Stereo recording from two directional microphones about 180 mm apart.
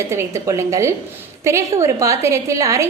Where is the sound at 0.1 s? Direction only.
15° right (ahead or behind).